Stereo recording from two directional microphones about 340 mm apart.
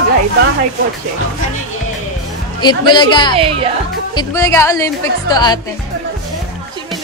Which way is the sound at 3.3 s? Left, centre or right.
Centre.